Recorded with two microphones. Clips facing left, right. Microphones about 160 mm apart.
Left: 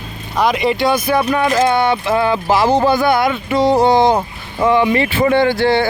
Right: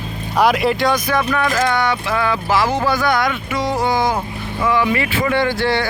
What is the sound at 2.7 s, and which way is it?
Speech, 35° left (ahead or behind).